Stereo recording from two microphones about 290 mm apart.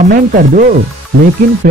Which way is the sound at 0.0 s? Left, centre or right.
Right.